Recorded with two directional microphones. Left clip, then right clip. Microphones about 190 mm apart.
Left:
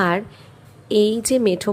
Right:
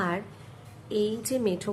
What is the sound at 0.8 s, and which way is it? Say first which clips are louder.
Speech: left 11 dB; 40° left (ahead or behind).